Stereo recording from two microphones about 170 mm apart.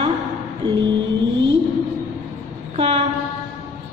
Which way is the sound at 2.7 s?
40° right (ahead or behind).